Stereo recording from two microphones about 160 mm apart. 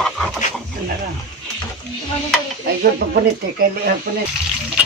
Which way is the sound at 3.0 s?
75° right (ahead or behind).